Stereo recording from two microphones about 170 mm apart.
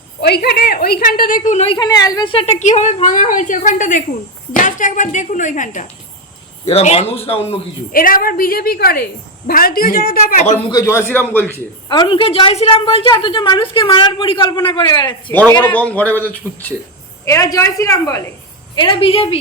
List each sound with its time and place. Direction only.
0.2 s a woman's voice: 70° left (ahead or behind); by 5.8 s 50° left (ahead or behind)
6.7 s a woman's voice: 35° left (ahead or behind)
7.9 s a woman's voice: 55° left (ahead or behind)
10.7 s a man's voice: 20° left (ahead or behind)
11.9 s a woman's voice: 30° left (ahead or behind)
15.3 s a man's voice: 10° left (ahead or behind)
18.8 s a woman's voice: 30° left (ahead or behind)